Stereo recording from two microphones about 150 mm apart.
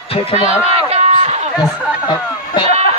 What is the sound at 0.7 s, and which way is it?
Run, 40° right (ahead or behind).